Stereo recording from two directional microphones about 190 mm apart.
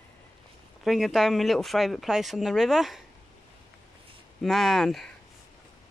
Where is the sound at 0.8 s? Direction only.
Centre (ahead or behind).